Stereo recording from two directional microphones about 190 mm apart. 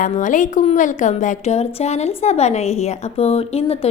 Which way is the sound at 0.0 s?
40° left (ahead or behind).